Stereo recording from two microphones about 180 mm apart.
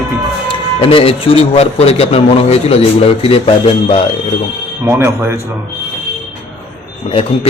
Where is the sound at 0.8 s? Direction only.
30° left (ahead or behind).